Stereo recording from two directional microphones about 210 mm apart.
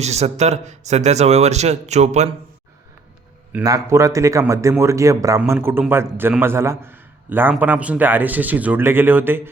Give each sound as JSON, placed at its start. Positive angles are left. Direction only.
{"t": 0.0, "sound": "speech", "side_deg": -30}
{"t": 3.6, "sound": "a man's voice", "side_deg": -15}